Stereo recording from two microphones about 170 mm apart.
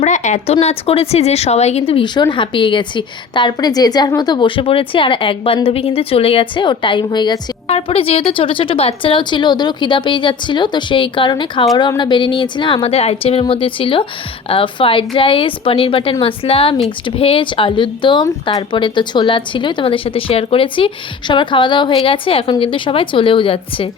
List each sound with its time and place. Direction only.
0.0 s speech: 45° left (ahead or behind)